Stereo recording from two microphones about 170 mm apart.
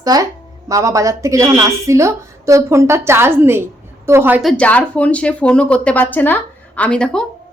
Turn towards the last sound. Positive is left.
turn(degrees=5)  # may be behind; listen again after turning